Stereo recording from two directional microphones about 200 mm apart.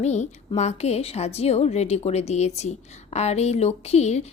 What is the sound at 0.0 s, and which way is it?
A woman's voice, 35° left (ahead or behind).